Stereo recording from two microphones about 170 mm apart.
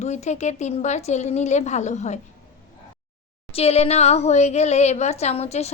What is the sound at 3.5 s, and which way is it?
A woman's voice, 35° left (ahead or behind).